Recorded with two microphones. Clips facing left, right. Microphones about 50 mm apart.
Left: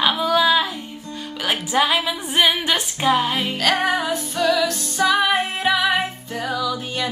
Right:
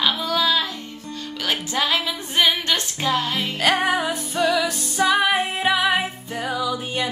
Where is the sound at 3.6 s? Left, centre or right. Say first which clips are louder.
Right 1 dB; centre.